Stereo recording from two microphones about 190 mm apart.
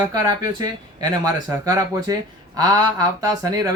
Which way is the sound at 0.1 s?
20° right (ahead or behind).